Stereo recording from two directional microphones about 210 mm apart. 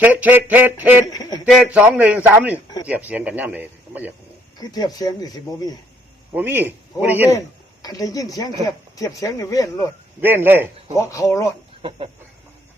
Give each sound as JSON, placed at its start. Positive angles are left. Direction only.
{"t": 0.0, "sound": "speech", "side_deg": -5}
{"t": 1.1, "sound": "speech", "side_deg": 20}
{"t": 1.5, "sound": "speech", "side_deg": -5}
{"t": 4.7, "sound": "speech", "side_deg": 20}
{"t": 6.3, "sound": "speech", "side_deg": -10}
{"t": 7.3, "sound": "speech", "side_deg": 15}
{"t": 10.2, "sound": "speech", "side_deg": -10}
{"t": 10.9, "sound": "speech", "side_deg": 15}
{"t": 11.8, "sound": "chicken", "side_deg": -25}